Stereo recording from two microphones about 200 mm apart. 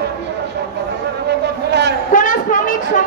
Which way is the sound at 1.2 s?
55° right (ahead or behind).